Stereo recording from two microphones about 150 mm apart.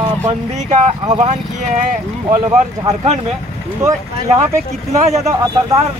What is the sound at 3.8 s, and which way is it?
Speech, 20° right (ahead or behind).